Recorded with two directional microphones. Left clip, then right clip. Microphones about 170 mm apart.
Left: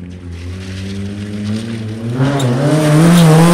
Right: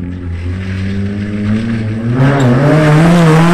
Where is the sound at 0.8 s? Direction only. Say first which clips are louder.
Right 6 dB; 20° left (ahead or behind).